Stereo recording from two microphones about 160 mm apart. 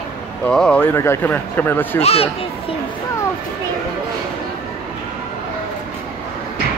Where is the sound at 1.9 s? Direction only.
40° left (ahead or behind).